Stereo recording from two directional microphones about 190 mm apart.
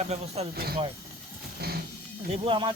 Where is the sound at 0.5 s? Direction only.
55° right (ahead or behind).